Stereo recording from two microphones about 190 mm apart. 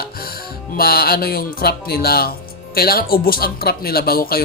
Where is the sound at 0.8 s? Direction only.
55° left (ahead or behind).